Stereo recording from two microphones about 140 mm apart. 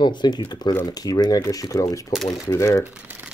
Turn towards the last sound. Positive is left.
turn(degrees=-10)  # may be behind; listen again after turning